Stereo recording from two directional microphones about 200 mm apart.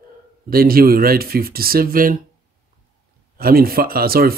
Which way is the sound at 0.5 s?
50° right (ahead or behind).